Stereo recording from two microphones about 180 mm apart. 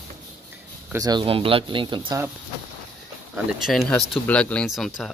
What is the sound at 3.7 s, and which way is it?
Speech, centre (ahead or behind).